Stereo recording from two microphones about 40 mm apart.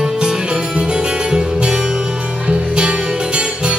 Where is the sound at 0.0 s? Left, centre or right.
Centre.